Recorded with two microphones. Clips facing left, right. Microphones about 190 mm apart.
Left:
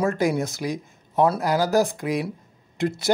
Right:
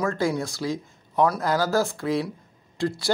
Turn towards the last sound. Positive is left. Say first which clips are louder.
# left 2 dB
turn(degrees=20)  # may be behind; listen again after turning